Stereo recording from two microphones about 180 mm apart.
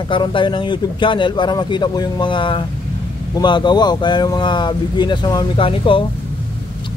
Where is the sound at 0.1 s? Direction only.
25° left (ahead or behind).